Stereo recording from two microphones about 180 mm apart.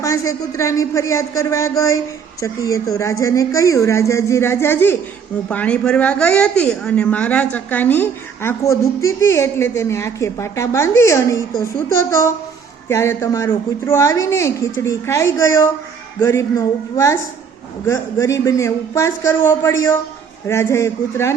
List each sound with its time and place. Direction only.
0.0 s a man's voice: 20° left (ahead or behind)
12.9 s a man's voice: 15° left (ahead or behind)